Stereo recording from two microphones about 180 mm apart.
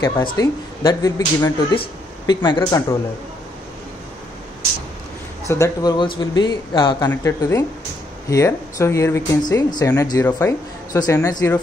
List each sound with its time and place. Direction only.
0.0 s speech: 20° left (ahead or behind)
5.5 s speech: 20° left (ahead or behind)
7.1 s speech: 15° left (ahead or behind)